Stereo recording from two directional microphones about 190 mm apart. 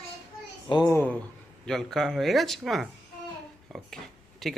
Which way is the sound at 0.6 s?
25° left (ahead or behind).